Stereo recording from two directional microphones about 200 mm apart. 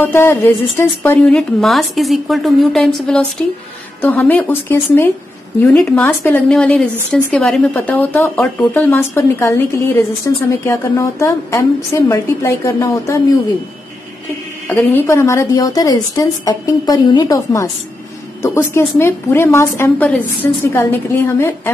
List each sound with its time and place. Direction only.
0.0 s a woman's voice: 10° left (ahead or behind)
14.7 s a woman's voice: 10° left (ahead or behind)